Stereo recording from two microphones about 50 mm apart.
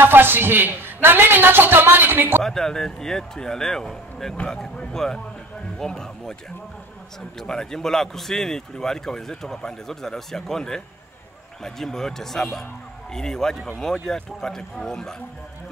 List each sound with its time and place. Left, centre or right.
0.0 s a man's voice: right
2.4 s speech: centre
7.3 s speech: centre